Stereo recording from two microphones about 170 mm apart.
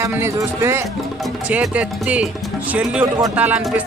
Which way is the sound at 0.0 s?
15° right (ahead or behind).